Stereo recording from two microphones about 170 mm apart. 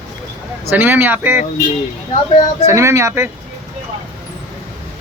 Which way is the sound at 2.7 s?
15° right (ahead or behind).